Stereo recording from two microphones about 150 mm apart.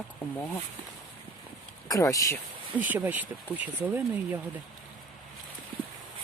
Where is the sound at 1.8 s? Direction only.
20° left (ahead or behind).